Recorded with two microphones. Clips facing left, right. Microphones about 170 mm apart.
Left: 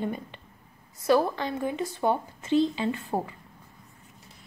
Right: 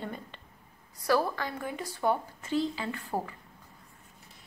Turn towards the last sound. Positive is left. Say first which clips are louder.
# left 5 dB
turn(degrees=20)  # may be behind; listen again after turning